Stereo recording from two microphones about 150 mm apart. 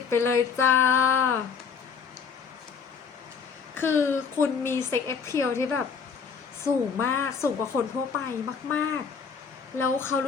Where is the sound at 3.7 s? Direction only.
15° left (ahead or behind).